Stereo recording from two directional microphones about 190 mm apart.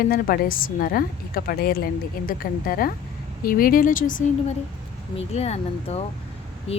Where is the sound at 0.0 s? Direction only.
50° left (ahead or behind).